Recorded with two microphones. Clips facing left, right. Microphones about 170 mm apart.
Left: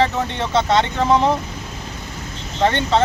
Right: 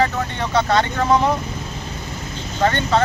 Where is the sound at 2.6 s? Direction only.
25° left (ahead or behind).